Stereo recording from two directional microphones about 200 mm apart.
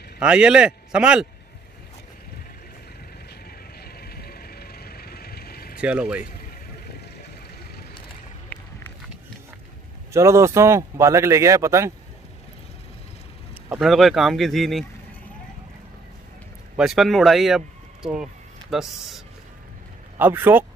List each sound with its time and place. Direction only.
0.2 s speech: 5° right (ahead or behind)
3.8 s vehicle: 50° left (ahead or behind)
5.8 s speech: 5° right (ahead or behind)
10.1 s speech: 15° right (ahead or behind)
13.7 s speech: centre (ahead or behind)
16.7 s speech: centre (ahead or behind)